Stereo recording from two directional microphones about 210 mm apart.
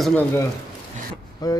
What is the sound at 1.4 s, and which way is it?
Speech, 20° left (ahead or behind).